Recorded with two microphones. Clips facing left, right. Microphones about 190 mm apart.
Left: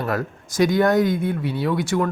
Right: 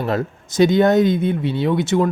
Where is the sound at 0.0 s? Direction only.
25° right (ahead or behind).